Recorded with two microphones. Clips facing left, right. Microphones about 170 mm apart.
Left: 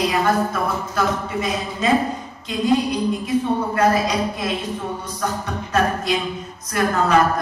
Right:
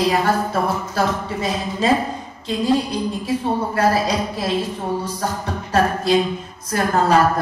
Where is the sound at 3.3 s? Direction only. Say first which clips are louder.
Left 1 dB; 30° right (ahead or behind).